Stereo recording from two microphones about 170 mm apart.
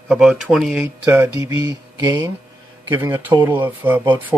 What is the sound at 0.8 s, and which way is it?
Speech, 15° right (ahead or behind).